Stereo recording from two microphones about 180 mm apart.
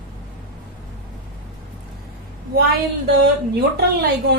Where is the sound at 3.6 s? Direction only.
65° right (ahead or behind).